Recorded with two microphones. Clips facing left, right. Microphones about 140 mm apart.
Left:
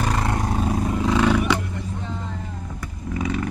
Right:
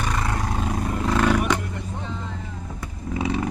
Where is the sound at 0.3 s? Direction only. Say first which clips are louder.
Left 3 dB; 20° left (ahead or behind).